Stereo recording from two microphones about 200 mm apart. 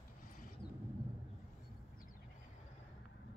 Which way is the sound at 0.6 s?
25° left (ahead or behind).